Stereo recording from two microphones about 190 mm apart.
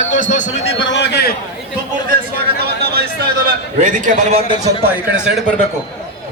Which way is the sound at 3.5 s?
40° right (ahead or behind).